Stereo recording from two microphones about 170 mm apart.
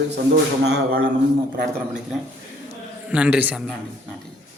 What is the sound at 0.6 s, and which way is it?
Speech, 75° right (ahead or behind).